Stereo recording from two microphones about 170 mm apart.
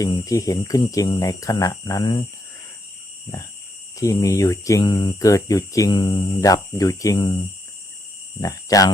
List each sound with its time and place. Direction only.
0.0 s speech: 20° left (ahead or behind)
3.9 s speech: 20° left (ahead or behind)
8.4 s speech: 20° left (ahead or behind)